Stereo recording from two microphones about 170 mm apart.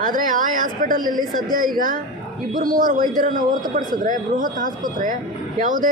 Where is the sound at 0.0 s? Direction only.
55° right (ahead or behind).